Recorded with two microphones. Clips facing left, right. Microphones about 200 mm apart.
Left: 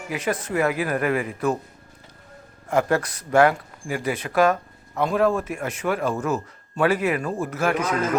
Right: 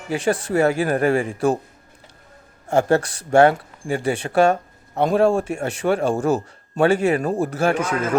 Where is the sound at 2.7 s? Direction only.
25° right (ahead or behind).